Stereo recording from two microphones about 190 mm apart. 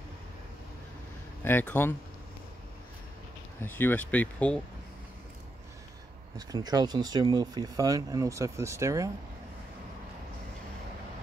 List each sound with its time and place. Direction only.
1.4 s speech: 10° left (ahead or behind)
3.6 s speech: 10° left (ahead or behind)
6.3 s speech: 20° right (ahead or behind)